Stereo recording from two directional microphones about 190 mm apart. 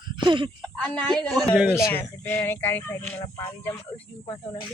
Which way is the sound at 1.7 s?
15° left (ahead or behind).